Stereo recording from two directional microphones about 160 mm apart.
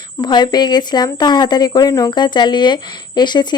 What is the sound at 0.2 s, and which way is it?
Speech, 25° left (ahead or behind).